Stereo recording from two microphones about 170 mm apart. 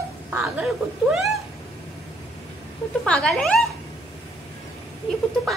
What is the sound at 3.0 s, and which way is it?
Speech, 5° left (ahead or behind).